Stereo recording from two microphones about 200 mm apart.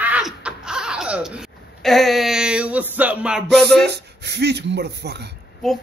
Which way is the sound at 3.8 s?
55° right (ahead or behind).